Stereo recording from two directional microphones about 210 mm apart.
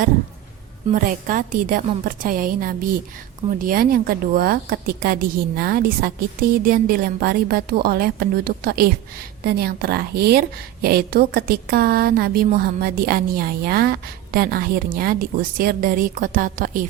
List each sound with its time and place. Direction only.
0.9 s a woman's voice: 40° right (ahead or behind)